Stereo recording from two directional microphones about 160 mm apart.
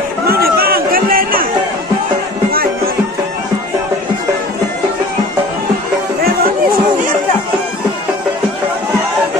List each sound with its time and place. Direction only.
0.3 s chatter: 70° right (ahead or behind)